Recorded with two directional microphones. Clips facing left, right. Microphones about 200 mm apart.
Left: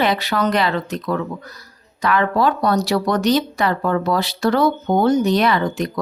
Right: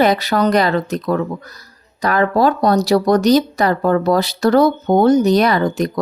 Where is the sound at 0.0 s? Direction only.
40° right (ahead or behind).